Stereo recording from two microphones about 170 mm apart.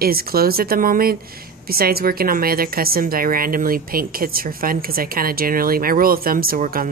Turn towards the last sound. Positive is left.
turn(degrees=-55)  # may be behind; listen again after turning